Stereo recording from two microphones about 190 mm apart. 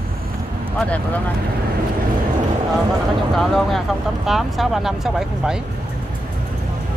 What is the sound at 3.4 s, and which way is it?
Speech, centre (ahead or behind).